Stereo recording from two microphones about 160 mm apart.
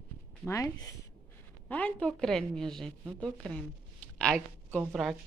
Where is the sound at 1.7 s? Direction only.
5° left (ahead or behind).